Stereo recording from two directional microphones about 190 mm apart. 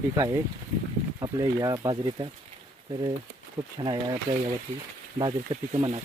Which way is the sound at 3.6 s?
35° right (ahead or behind).